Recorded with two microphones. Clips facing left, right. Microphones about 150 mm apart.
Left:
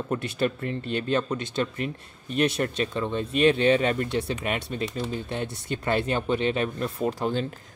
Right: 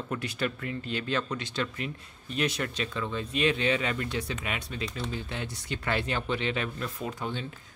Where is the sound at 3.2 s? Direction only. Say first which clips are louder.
Left 7 dB; 50° left (ahead or behind).